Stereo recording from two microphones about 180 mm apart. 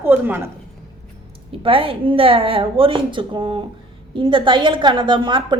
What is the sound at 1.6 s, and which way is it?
A woman's voice, 30° right (ahead or behind).